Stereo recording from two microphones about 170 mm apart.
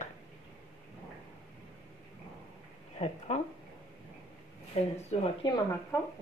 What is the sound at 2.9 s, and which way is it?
Speech, 35° left (ahead or behind).